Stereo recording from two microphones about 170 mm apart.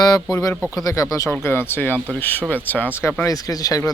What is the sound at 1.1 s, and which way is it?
Speech, 20° left (ahead or behind).